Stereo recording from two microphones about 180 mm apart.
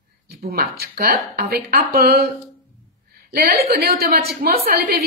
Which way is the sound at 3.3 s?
55° right (ahead or behind).